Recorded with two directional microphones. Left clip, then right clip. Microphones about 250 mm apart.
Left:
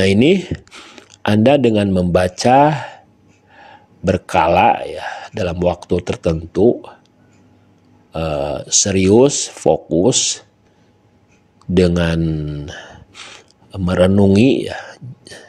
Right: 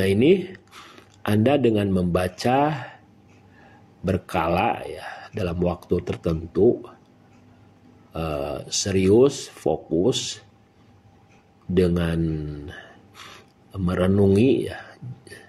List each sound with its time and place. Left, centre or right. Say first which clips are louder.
0.0 s speech: left 5 dB; left
8.1 s speech: left 8 dB; left
11.7 s a man's voice: left 7 dB; left